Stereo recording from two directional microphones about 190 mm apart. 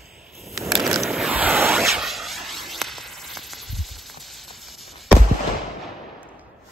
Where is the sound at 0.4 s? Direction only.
Centre (ahead or behind).